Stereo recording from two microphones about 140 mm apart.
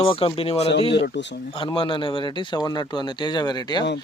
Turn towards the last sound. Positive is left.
turn(degrees=30)  # may be behind; listen again after turning